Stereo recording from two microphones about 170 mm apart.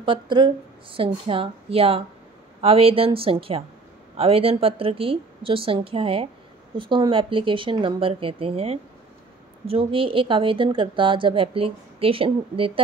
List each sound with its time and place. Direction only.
0.0 s a woman's voice: 30° right (ahead or behind)